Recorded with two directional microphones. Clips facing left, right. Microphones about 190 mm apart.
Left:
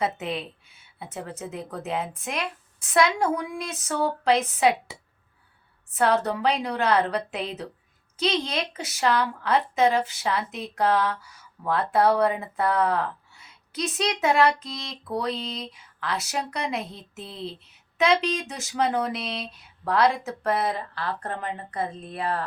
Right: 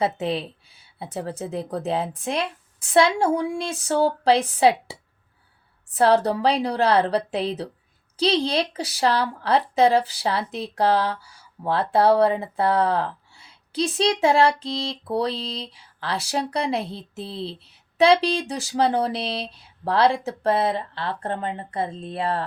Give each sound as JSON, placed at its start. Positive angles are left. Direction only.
{"t": 0.0, "sound": "a woman's voice", "side_deg": -30}